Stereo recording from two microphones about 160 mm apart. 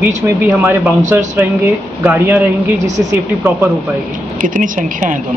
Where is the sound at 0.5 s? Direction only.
5° right (ahead or behind).